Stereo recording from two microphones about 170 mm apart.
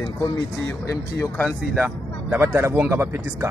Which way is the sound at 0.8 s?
15° left (ahead or behind).